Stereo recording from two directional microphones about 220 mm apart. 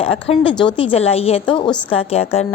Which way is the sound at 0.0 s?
25° left (ahead or behind).